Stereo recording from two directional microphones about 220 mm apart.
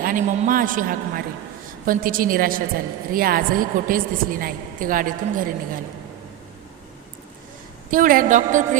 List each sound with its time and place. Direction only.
0.0 s a woman's voice: 40° right (ahead or behind)
7.9 s a woman's voice: 40° right (ahead or behind)